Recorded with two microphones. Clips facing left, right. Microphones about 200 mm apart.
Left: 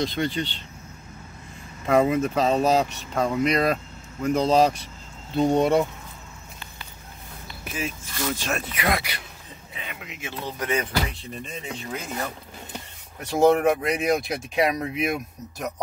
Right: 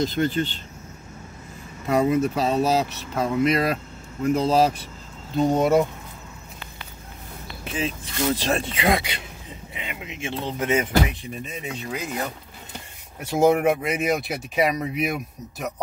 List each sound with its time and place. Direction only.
0.1 s speech: 45° right (ahead or behind)
1.9 s speech: centre (ahead or behind)
7.6 s speech: 25° right (ahead or behind)
11.3 s speech: 5° right (ahead or behind)
11.6 s speech: 20° right (ahead or behind)
13.2 s speech: 10° right (ahead or behind)